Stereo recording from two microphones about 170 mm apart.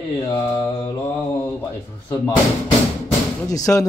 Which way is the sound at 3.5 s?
20° left (ahead or behind).